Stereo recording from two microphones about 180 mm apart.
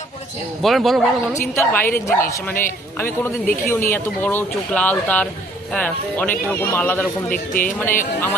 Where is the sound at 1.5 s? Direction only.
10° left (ahead or behind).